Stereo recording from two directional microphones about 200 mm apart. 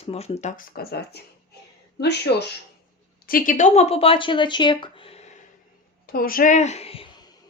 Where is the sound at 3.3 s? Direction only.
45° left (ahead or behind).